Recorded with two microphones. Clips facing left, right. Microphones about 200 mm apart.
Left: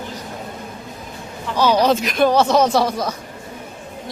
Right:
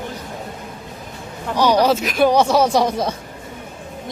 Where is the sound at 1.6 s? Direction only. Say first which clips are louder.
Even; 15° right (ahead or behind).